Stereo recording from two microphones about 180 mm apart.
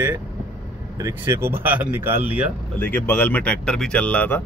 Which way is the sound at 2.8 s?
10° left (ahead or behind).